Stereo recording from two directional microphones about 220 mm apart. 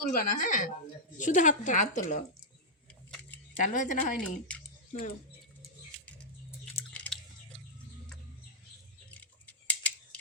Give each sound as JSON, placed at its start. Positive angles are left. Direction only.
{"t": 0.0, "sound": "a woman's voice", "side_deg": 35}
{"t": 3.1, "sound": "keys jangling", "side_deg": 5}
{"t": 3.6, "sound": "a woman's voice", "side_deg": 35}
{"t": 4.2, "sound": "speech", "side_deg": 5}
{"t": 4.9, "sound": "speech", "side_deg": 40}
{"t": 6.9, "sound": "chewing", "side_deg": 5}
{"t": 9.6, "sound": "scissors", "side_deg": 5}